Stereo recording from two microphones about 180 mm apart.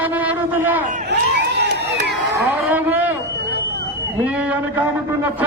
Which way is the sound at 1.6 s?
70° right (ahead or behind).